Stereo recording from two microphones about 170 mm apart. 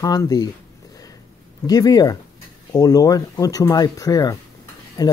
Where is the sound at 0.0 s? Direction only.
20° left (ahead or behind).